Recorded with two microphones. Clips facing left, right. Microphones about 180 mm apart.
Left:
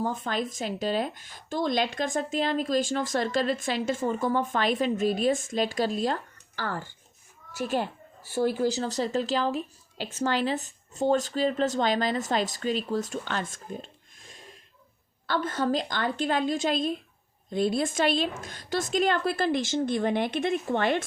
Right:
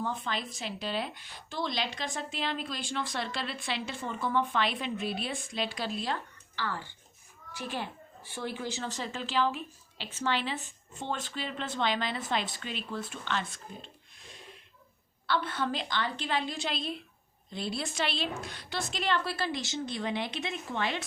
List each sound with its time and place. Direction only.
0.0 s a woman's voice: 45° left (ahead or behind)